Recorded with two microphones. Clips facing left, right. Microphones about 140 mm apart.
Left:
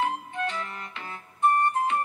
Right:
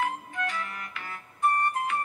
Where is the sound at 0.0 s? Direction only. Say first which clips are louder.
Left 2 dB; 25° left (ahead or behind).